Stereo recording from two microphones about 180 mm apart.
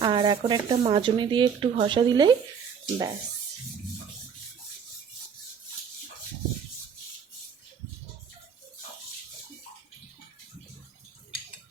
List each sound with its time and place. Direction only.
0.0 s speech: 25° right (ahead or behind)